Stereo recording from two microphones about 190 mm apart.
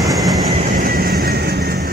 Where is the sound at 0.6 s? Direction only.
45° right (ahead or behind).